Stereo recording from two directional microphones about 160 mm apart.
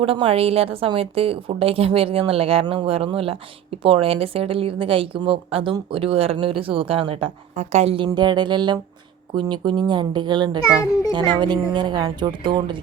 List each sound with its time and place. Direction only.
0.0 s a woman's voice: 35° right (ahead or behind)
7.5 s a woman's voice: 45° right (ahead or behind); by 12.8 s 30° right (ahead or behind)